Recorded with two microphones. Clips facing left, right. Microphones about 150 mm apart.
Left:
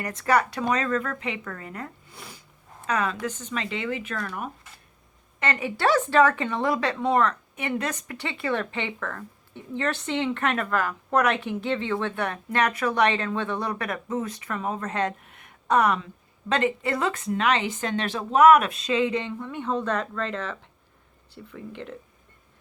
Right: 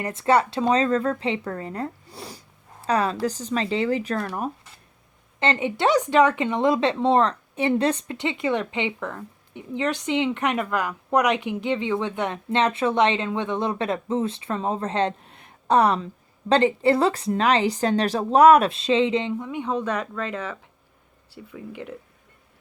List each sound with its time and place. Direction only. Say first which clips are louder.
0.0 s a woman's voice: right 3 dB; 25° right (ahead or behind); by 21.9 s 5° right (ahead or behind)